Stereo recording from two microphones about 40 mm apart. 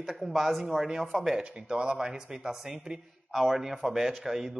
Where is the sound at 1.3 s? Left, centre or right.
Right.